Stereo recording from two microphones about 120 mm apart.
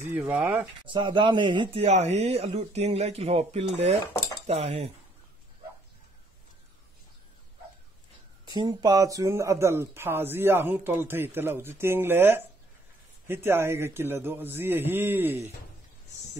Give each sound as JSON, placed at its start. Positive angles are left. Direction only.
{"t": 0.1, "sound": "speech", "side_deg": -15}
{"t": 0.8, "sound": "speech", "side_deg": -40}
{"t": 8.5, "sound": "speech", "side_deg": -35}